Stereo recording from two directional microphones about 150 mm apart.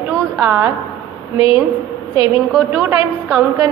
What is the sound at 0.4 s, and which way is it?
Speech, 15° right (ahead or behind).